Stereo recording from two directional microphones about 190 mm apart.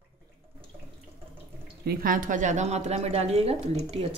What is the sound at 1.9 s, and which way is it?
A woman's voice, 45° right (ahead or behind).